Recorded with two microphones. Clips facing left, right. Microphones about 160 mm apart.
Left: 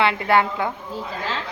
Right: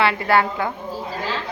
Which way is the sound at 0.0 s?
20° left (ahead or behind).